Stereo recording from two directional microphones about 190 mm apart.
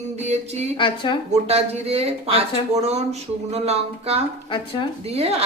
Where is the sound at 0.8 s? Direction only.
25° left (ahead or behind).